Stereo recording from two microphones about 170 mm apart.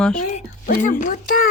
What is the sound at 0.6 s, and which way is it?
Speech, 55° left (ahead or behind).